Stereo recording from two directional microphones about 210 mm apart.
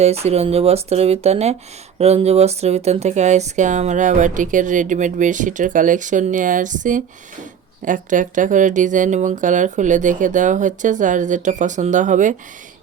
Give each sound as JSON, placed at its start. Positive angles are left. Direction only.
{"t": 0.0, "sound": "speech", "side_deg": -30}